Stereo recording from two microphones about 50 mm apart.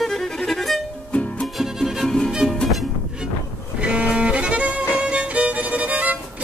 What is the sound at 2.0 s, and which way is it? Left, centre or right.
Music, centre.